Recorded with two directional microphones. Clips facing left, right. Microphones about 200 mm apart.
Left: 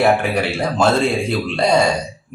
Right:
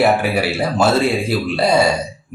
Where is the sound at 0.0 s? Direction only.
5° right (ahead or behind).